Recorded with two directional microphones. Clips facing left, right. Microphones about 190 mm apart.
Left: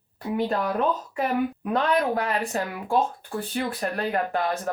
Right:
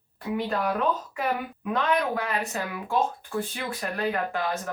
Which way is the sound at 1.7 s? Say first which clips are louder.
Even; 35° left (ahead or behind).